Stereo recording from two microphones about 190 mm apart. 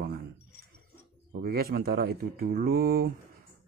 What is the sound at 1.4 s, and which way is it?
Speech, 50° right (ahead or behind).